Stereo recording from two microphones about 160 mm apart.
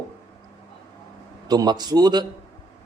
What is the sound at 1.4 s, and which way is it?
Speech, 25° right (ahead or behind).